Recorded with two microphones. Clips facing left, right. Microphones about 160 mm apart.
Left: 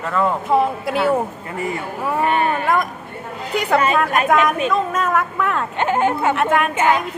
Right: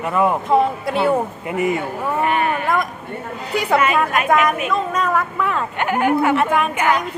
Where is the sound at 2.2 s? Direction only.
30° left (ahead or behind).